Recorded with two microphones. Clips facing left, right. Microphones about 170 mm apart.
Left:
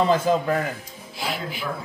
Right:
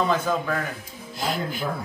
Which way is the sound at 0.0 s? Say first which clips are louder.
Left 4 dB; 30° left (ahead or behind).